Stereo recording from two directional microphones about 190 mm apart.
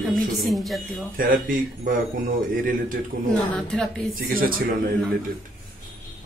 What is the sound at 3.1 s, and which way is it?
Speech, 55° right (ahead or behind).